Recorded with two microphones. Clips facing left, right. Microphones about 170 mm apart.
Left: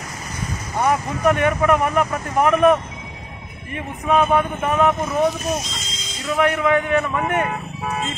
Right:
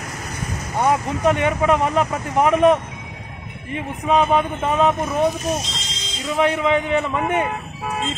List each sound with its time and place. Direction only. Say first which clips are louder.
0.7 s speech: right 1 dB; 20° right (ahead or behind)